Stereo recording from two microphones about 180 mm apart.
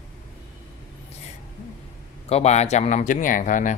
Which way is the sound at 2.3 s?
35° left (ahead or behind).